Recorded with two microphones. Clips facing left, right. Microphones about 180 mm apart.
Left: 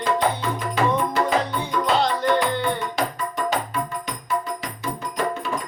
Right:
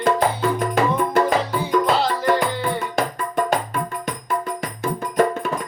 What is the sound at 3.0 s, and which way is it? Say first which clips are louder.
Music: right 3 dB; 50° right (ahead or behind).